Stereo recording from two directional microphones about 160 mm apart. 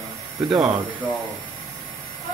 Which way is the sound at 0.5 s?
Centre (ahead or behind).